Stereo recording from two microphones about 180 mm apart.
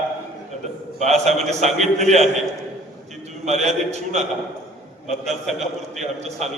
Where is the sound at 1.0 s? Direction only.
40° right (ahead or behind).